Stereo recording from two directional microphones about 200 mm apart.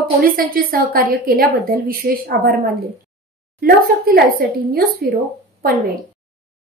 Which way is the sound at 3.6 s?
50° right (ahead or behind).